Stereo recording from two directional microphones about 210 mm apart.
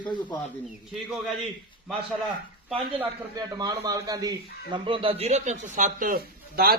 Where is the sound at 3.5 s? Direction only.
15° right (ahead or behind).